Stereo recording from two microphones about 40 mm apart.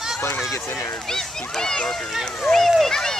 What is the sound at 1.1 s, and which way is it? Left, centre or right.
Speech, centre.